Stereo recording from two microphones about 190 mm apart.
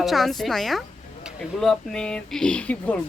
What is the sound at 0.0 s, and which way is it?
Speech, centre (ahead or behind).